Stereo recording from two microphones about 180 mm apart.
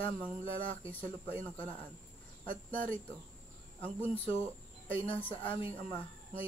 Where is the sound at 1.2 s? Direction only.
10° left (ahead or behind).